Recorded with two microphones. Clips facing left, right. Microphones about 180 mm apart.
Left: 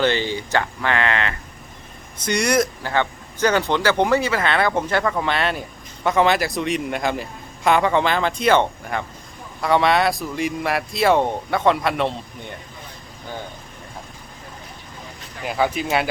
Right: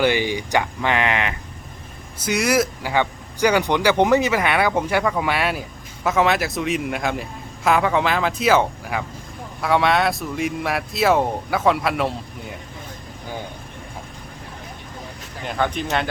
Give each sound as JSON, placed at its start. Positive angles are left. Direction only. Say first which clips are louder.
{"t": 0.0, "sound": "speech", "louder": "right 1 dB", "side_deg": -10}
{"t": 2.2, "sound": "speech", "louder": "even", "side_deg": -5}
{"t": 15.4, "sound": "speech", "louder": "left 2 dB", "side_deg": 5}